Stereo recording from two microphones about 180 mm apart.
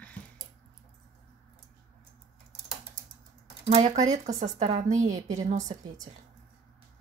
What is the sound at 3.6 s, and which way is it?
Speech, 40° right (ahead or behind).